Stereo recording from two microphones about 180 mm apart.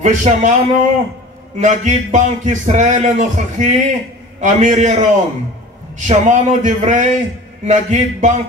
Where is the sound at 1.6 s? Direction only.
45° right (ahead or behind).